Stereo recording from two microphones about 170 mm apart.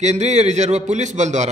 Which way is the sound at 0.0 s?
40° right (ahead or behind).